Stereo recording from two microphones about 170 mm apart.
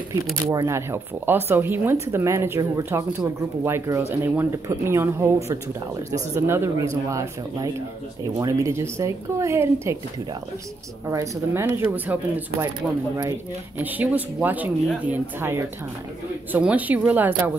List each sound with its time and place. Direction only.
0.5 s speech: 15° right (ahead or behind)
11.1 s speech: 15° right (ahead or behind)
13.7 s speech: 10° right (ahead or behind)